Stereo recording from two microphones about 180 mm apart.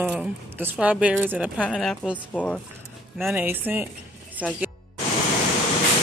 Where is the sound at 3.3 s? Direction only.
10° right (ahead or behind).